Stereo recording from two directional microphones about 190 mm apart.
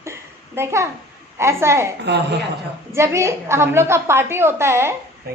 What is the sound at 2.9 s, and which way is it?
A woman's voice, 15° right (ahead or behind).